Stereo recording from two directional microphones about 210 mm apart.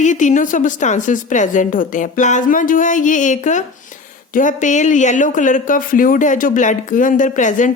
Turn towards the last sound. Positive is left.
turn(degrees=35)  # may be behind; listen again after turning